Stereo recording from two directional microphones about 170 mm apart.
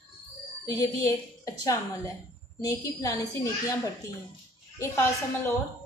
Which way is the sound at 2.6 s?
20° left (ahead or behind).